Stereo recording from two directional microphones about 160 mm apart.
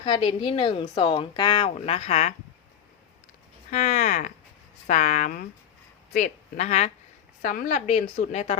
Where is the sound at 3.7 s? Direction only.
45° left (ahead or behind).